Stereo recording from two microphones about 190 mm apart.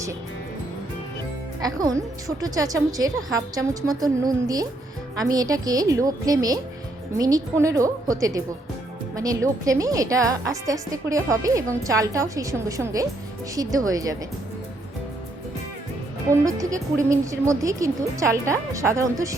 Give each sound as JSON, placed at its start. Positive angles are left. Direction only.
{"t": 1.6, "sound": "a woman's voice", "side_deg": -20}
{"t": 16.3, "sound": "a woman's voice", "side_deg": -15}